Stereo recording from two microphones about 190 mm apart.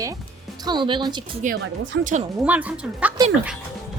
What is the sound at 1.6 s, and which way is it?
Speech, 75° right (ahead or behind).